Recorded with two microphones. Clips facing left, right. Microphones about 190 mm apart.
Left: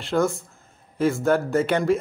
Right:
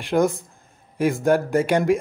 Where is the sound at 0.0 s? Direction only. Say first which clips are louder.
Right 2 dB; 15° right (ahead or behind).